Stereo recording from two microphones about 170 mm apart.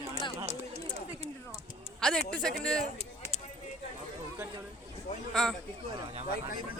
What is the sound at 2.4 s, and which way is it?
Speech, 5° left (ahead or behind).